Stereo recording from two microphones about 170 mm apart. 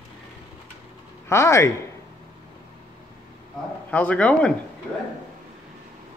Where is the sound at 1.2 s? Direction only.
15° left (ahead or behind).